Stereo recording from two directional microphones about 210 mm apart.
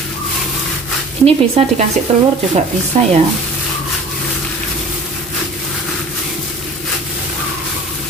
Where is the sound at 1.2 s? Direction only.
30° right (ahead or behind).